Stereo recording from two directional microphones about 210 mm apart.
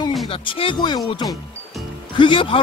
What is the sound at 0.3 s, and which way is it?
Speech, 25° left (ahead or behind).